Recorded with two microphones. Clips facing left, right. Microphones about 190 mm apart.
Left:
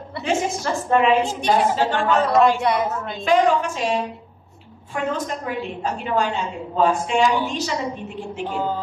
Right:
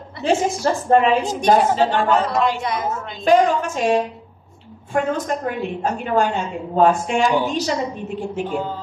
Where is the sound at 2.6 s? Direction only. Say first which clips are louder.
Left 3 dB; 65° left (ahead or behind).